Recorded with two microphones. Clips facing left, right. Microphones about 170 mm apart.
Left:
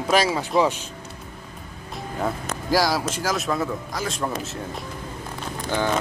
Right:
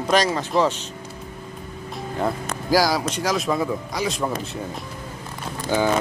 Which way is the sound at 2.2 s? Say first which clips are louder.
Right 2 dB; centre (ahead or behind).